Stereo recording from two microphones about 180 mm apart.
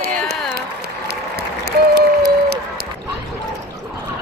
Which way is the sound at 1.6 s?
65° right (ahead or behind).